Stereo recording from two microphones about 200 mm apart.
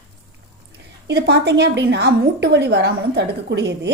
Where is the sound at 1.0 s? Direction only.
55° right (ahead or behind).